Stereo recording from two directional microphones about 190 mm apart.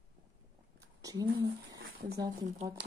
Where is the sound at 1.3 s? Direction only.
80° right.